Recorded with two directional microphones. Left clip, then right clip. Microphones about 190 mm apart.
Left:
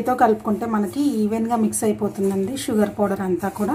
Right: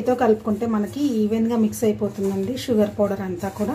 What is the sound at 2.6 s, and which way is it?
Speech, 25° left (ahead or behind).